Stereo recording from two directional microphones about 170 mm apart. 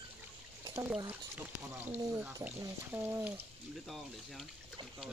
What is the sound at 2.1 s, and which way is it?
Speech, 15° right (ahead or behind).